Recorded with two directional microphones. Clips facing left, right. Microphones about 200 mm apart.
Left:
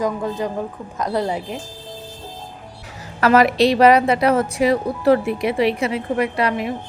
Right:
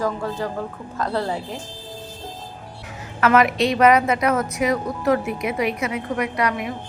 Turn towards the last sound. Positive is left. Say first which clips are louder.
# left 3 dB
turn(degrees=30)  # may be behind; listen again after turning